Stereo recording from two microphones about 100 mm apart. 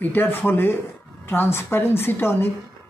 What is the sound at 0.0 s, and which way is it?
Speech, 20° left (ahead or behind).